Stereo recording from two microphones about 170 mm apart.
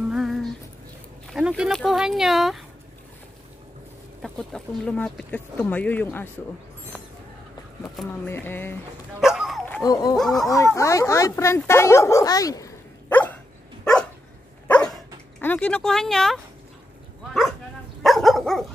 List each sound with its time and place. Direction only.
0.1 s a sound: centre (ahead or behind)
1.3 s speech: 5° right (ahead or behind)
4.2 s speech: centre (ahead or behind)
8.3 s speech: 10° left (ahead or behind)
9.2 s dog: 5° right (ahead or behind)
9.8 s a sound: 20° left (ahead or behind)
10.3 s speech: 20° left (ahead or behind)
13.1 s dog: 10° left (ahead or behind)
15.3 s speech: 10° left (ahead or behind)
18.0 s dog: centre (ahead or behind)